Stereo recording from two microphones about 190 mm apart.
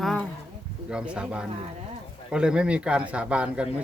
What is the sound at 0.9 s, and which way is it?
A man's voice, 5° right (ahead or behind).